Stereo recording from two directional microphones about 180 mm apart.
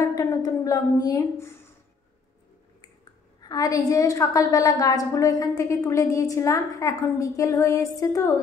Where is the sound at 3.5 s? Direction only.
20° left (ahead or behind).